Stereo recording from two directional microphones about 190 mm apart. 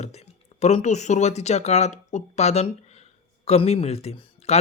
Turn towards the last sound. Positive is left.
turn(degrees=35)  # may be behind; listen again after turning